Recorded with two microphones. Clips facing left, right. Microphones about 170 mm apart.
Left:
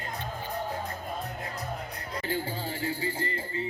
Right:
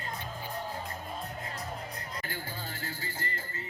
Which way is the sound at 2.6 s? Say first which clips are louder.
Left 8 dB; 30° left (ahead or behind).